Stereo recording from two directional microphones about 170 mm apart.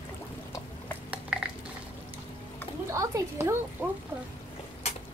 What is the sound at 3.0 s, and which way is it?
Speech, 20° right (ahead or behind).